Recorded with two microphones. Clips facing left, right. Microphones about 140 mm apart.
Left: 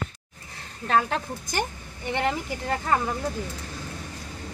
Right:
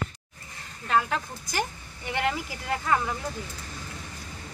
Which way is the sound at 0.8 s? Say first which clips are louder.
Left 2 dB; 40° left (ahead or behind).